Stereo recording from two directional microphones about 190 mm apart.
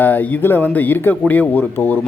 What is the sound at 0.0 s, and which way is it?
A man's voice, 10° left (ahead or behind).